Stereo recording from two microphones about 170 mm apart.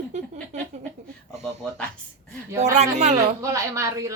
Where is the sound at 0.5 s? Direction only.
40° right (ahead or behind).